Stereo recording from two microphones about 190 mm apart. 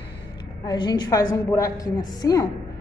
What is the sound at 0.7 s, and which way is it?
A woman's voice, 25° left (ahead or behind).